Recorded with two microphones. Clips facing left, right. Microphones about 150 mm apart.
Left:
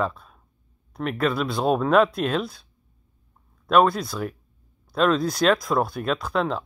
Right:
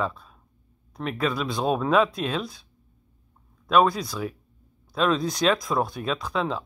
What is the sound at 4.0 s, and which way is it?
Speech, centre (ahead or behind).